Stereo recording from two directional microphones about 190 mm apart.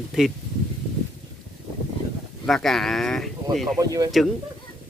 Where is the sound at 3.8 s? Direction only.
20° right (ahead or behind).